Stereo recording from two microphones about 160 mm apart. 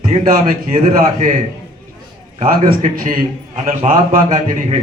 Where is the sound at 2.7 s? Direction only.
60° right (ahead or behind).